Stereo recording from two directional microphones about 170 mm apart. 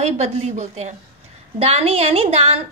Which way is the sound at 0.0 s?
40° right (ahead or behind).